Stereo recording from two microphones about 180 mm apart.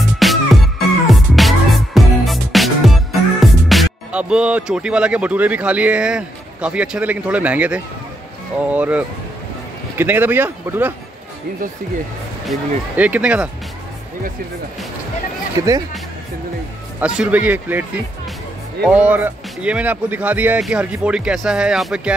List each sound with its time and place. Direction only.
0.2 s music: centre (ahead or behind)
8.5 s speech: 10° right (ahead or behind)
12.4 s speech: 10° right (ahead or behind)
15.6 s speech: 20° right (ahead or behind)
17.0 s speech: 10° right (ahead or behind)
18.9 s speech: 5° right (ahead or behind)